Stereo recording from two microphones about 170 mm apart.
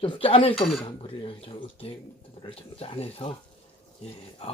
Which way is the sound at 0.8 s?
30° left (ahead or behind).